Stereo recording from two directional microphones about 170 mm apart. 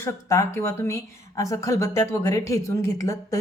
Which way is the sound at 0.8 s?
20° left (ahead or behind).